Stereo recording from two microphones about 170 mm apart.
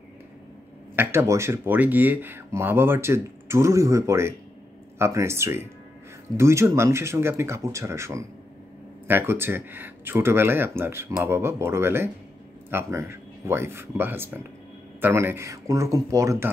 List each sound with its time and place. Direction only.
0.9 s speech: 15° right (ahead or behind)